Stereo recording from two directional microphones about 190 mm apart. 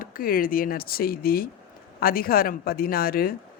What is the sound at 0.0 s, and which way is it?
A woman's voice, 50° left (ahead or behind).